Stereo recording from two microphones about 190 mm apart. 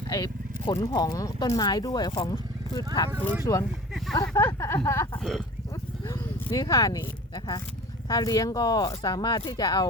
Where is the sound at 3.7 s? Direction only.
Centre (ahead or behind).